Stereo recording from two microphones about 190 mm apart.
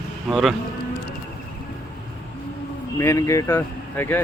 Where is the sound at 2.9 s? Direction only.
15° left (ahead or behind).